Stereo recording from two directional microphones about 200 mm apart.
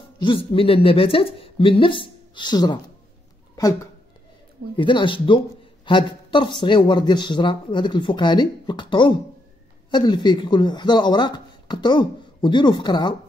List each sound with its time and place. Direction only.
0.2 s speech: 25° left (ahead or behind)